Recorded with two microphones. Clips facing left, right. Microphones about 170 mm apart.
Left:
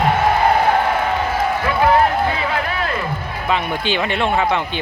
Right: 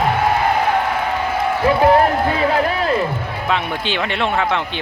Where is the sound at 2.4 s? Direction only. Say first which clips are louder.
Right 5 dB; 35° right (ahead or behind).